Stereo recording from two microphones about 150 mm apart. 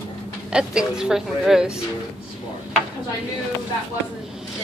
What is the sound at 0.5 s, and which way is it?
A woman's voice, 5° right (ahead or behind).